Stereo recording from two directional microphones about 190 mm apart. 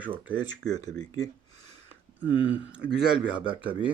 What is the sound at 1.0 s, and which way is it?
Speech, 20° left (ahead or behind).